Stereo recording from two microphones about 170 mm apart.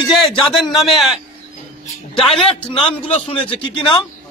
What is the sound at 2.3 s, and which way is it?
Speech, 5° left (ahead or behind).